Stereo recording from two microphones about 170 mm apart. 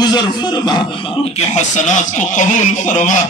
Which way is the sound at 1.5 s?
45° left (ahead or behind).